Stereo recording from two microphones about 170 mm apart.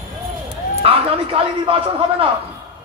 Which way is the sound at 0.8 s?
35° right (ahead or behind).